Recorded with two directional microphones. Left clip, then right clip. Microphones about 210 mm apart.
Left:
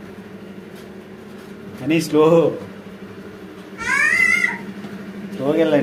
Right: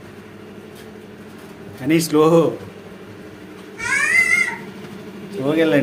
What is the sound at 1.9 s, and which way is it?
Speech, 20° right (ahead or behind).